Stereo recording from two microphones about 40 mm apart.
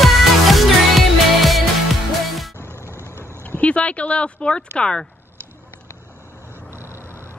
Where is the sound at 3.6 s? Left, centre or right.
Left.